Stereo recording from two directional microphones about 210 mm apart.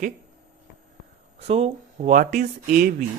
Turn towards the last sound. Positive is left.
turn(degrees=-40)  # may be behind; listen again after turning